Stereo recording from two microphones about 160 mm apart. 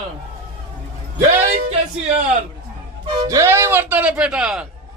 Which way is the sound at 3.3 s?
15° right (ahead or behind).